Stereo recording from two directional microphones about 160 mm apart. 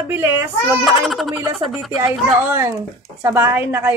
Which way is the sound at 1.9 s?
15° right (ahead or behind).